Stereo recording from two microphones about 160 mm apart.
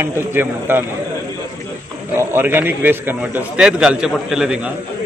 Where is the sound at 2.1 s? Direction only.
15° right (ahead or behind).